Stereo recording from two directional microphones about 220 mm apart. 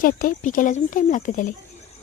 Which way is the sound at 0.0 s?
40° left (ahead or behind).